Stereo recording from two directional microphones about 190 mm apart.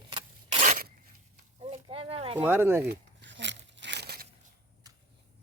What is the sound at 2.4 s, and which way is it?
Speech, 10° right (ahead or behind).